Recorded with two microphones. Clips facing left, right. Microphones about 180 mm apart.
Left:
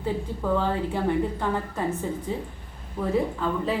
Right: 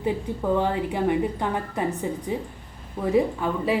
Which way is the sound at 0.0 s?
15° right (ahead or behind).